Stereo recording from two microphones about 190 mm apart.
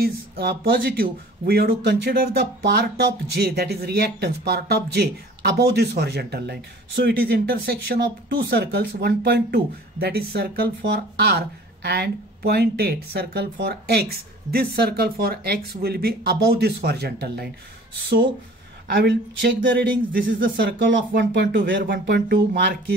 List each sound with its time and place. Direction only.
0.0 s speech: 55° right (ahead or behind)
18.9 s speech: 65° right (ahead or behind)
20.1 s speech: 45° right (ahead or behind)
20.5 s speech: 70° right (ahead or behind)